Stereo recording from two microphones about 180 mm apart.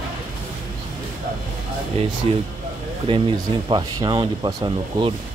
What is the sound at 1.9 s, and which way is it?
Speech, 35° right (ahead or behind).